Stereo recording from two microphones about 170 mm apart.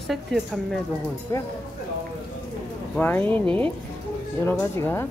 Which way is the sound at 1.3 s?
15° left (ahead or behind).